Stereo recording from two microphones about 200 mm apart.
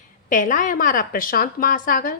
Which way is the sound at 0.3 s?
40° left (ahead or behind).